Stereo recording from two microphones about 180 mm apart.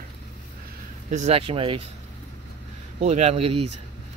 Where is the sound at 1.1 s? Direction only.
40° right (ahead or behind).